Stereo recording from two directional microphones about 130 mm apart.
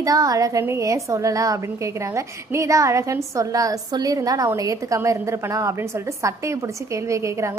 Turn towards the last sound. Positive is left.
turn(degrees=-25)  # may be behind; listen again after turning